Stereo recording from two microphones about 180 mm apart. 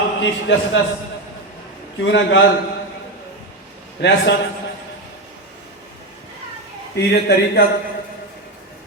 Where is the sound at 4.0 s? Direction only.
70° left (ahead or behind).